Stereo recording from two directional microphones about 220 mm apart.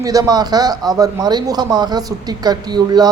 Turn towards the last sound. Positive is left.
turn(degrees=-20)  # may be behind; listen again after turning